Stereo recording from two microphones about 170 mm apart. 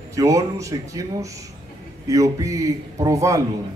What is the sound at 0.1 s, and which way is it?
A man's voice, 20° right (ahead or behind).